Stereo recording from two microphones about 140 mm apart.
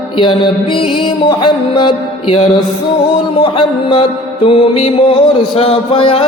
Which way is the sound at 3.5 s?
40° left (ahead or behind).